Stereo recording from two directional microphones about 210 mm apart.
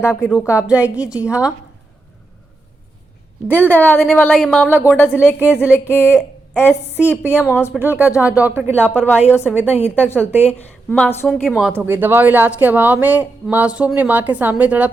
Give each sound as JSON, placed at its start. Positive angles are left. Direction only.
{"t": 0.0, "sound": "a woman's voice", "side_deg": 10}
{"t": 0.3, "sound": "a woman's voice", "side_deg": -5}
{"t": 3.5, "sound": "a woman's voice", "side_deg": 10}
{"t": 5.2, "sound": "a woman's voice", "side_deg": -5}
{"t": 5.7, "sound": "a woman's voice", "side_deg": 10}
{"t": 7.7, "sound": "a woman's voice", "side_deg": -10}
{"t": 11.4, "sound": "speech", "side_deg": 0}